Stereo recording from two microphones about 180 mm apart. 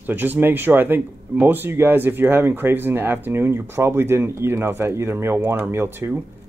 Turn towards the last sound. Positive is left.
turn(degrees=-15)  # may be behind; listen again after turning